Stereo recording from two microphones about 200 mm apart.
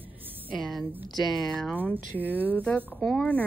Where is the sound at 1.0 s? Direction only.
20° left (ahead or behind).